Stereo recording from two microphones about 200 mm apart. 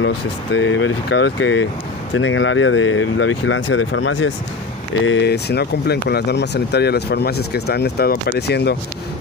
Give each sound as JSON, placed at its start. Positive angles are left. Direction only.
{"t": 0.6, "sound": "speech", "side_deg": 70}
{"t": 5.0, "sound": "speech", "side_deg": 65}